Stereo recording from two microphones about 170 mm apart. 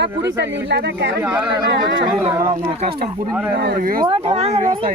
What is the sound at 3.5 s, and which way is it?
Speech, 70° right (ahead or behind).